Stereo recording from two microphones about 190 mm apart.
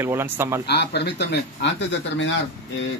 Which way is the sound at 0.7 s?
60° left (ahead or behind).